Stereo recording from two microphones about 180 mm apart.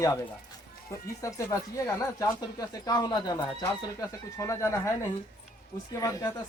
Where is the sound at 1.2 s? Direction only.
15° left (ahead or behind).